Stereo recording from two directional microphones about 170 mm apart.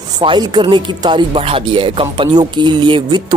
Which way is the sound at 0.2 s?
30° right (ahead or behind).